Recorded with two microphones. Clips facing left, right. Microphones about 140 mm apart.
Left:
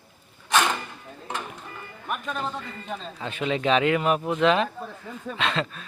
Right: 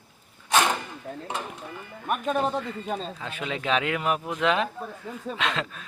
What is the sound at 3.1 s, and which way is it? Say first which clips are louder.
Speech: left 5 dB; 5° right (ahead or behind).